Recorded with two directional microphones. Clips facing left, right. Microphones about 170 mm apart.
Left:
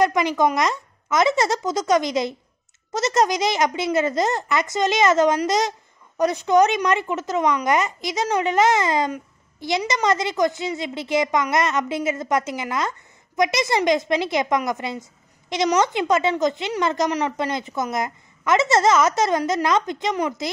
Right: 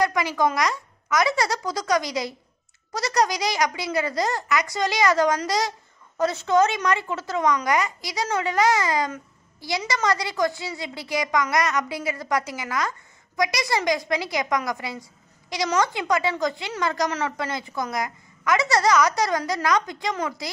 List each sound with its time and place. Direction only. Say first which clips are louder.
0.0 s speech: left 3 dB; 20° left (ahead or behind)